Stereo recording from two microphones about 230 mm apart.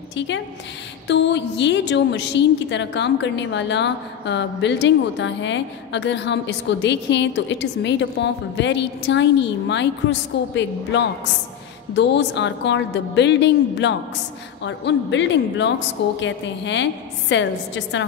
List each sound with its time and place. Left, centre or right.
1.0 s a woman's voice: left